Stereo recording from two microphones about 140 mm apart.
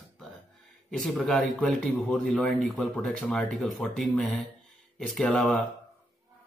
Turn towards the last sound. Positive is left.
turn(degrees=5)  # may be behind; listen again after turning